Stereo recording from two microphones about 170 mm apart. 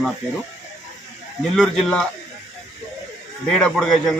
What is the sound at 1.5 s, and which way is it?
Speech, 5° left (ahead or behind).